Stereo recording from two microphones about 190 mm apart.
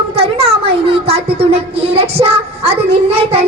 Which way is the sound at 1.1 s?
30° right (ahead or behind).